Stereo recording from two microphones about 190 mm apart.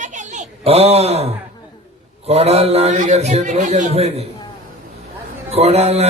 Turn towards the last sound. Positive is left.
turn(degrees=-35)  # may be behind; listen again after turning